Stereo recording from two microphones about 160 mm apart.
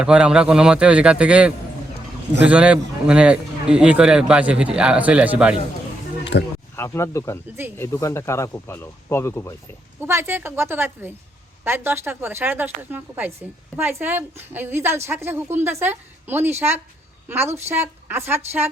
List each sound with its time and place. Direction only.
0.0 s a man's voice: 5° right (ahead or behind)
6.3 s speech: 90° left
6.7 s speech: 15° left (ahead or behind)
10.0 s a man's voice: 15° right (ahead or behind)